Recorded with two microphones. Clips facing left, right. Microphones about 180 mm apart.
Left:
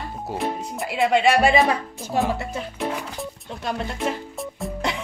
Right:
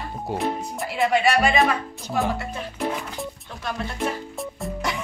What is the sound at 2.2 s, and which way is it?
Speech, 5° left (ahead or behind).